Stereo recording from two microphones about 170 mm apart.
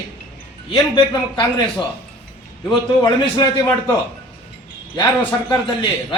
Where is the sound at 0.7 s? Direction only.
25° left (ahead or behind).